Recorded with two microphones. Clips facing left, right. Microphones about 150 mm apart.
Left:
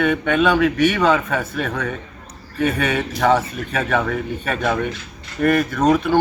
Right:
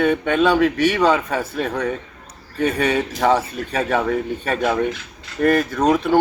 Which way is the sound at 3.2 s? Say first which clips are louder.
Left 1 dB; 30° right (ahead or behind).